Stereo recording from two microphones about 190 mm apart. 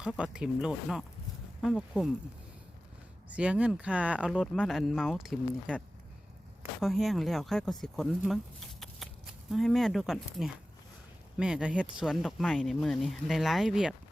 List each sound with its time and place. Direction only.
0.0 s speech: 5° right (ahead or behind)
3.2 s speech: 5° right (ahead or behind)
6.8 s speech: centre (ahead or behind)
9.5 s speech: centre (ahead or behind)